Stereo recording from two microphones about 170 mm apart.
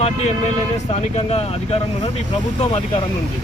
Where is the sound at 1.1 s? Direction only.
35° left (ahead or behind).